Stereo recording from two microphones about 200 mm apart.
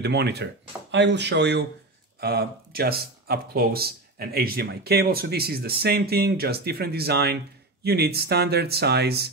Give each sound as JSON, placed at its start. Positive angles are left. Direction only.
{"t": 0.0, "sound": "speech", "side_deg": -55}